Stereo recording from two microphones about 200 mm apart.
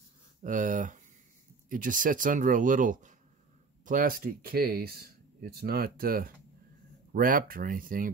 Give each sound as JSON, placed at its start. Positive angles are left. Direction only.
{"t": 0.4, "sound": "speech", "side_deg": -40}